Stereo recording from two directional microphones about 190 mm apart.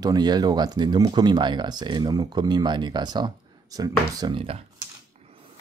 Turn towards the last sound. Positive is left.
turn(degrees=-30)  # may be behind; listen again after turning